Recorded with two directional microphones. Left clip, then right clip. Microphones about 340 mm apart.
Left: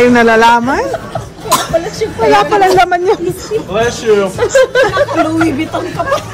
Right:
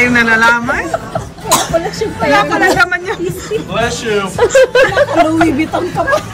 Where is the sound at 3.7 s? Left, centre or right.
Left.